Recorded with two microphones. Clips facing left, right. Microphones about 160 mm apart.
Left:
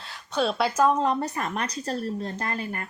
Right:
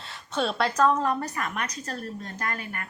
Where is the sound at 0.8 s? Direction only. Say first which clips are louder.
Left 1 dB; 15° left (ahead or behind).